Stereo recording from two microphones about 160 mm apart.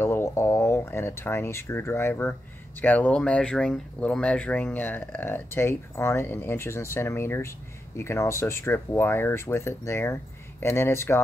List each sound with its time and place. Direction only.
0.0 s speech: 15° left (ahead or behind)